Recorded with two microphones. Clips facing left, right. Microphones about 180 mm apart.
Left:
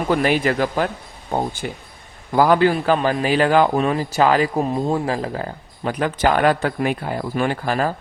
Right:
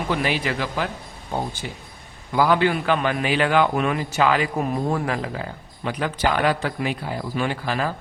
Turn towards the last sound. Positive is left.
turn(degrees=45)  # may be behind; listen again after turning